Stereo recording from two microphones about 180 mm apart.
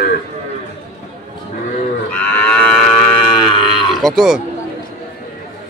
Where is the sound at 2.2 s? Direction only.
10° left (ahead or behind).